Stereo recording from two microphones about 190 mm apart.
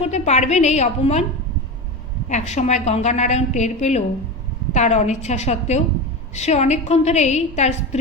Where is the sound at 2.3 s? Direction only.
40° left (ahead or behind).